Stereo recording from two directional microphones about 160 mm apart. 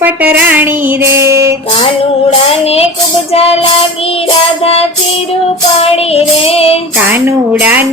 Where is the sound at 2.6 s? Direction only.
40° left (ahead or behind).